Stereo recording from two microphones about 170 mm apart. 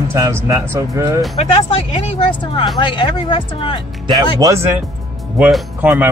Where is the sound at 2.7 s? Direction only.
30° left (ahead or behind).